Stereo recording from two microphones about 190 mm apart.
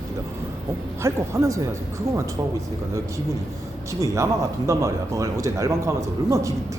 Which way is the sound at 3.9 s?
15° right (ahead or behind).